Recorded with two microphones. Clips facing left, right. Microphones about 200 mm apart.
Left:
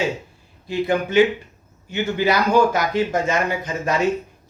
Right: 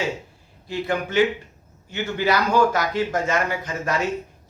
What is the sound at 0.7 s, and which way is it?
Speech, 15° left (ahead or behind).